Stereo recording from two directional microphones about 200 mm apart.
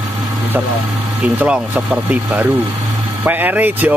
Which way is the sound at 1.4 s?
5° right (ahead or behind).